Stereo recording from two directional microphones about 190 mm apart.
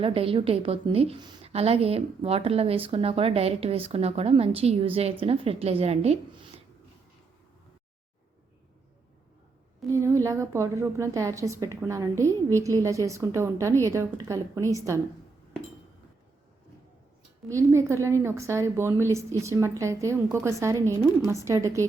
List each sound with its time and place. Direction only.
0.0 s a woman's voice: 30° right (ahead or behind)
9.9 s a woman's voice: 15° right (ahead or behind)
17.5 s a woman's voice: 15° right (ahead or behind)